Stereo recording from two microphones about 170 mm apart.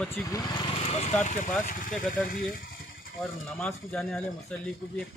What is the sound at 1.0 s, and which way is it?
Speech, 45° left (ahead or behind).